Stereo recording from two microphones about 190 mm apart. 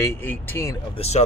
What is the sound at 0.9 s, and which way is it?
Speech, 30° left (ahead or behind).